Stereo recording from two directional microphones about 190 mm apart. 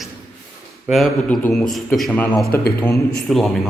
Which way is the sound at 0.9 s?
Centre (ahead or behind).